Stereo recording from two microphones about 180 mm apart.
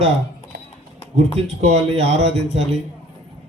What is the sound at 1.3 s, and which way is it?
Speech, 35° right (ahead or behind).